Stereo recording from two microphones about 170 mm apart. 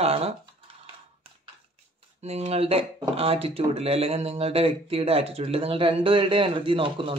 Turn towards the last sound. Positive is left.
turn(degrees=-30)  # may be behind; listen again after turning